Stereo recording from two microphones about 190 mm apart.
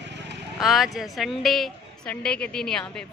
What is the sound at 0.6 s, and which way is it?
A woman's voice, centre (ahead or behind).